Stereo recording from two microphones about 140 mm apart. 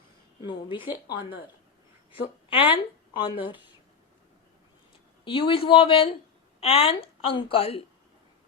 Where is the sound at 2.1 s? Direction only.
40° left (ahead or behind).